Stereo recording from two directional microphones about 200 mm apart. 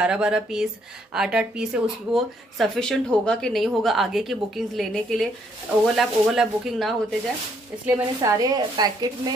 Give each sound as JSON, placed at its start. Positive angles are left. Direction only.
{"t": 0.0, "sound": "speech", "side_deg": -5}
{"t": 7.8, "sound": "a woman's voice", "side_deg": -15}